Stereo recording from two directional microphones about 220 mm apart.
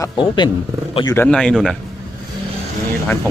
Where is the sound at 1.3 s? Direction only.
5° left (ahead or behind).